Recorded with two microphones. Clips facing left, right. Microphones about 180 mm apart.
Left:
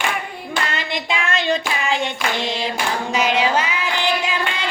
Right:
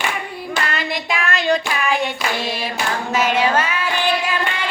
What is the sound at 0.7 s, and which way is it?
Child singing, 25° left (ahead or behind).